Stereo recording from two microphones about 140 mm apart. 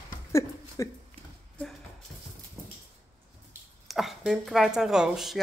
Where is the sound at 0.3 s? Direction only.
20° left (ahead or behind).